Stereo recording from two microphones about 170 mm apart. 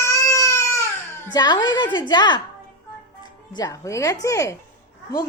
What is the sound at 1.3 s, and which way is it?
A woman's voice, 25° left (ahead or behind).